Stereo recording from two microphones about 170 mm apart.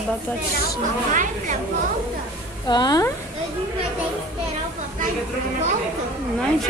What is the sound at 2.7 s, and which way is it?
Speech, 25° left (ahead or behind).